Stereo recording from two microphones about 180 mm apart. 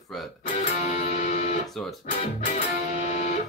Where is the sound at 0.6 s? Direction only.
40° left (ahead or behind).